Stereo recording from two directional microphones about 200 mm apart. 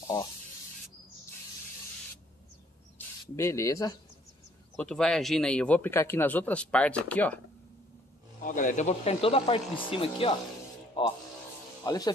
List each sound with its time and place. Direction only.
3.3 s a man's voice: 15° left (ahead or behind)
4.7 s a man's voice: 5° left (ahead or behind)
8.5 s speech: 40° left (ahead or behind); by 12.1 s 20° left (ahead or behind)